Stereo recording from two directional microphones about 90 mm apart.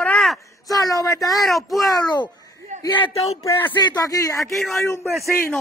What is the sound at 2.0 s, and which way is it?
Speech, 55° left (ahead or behind).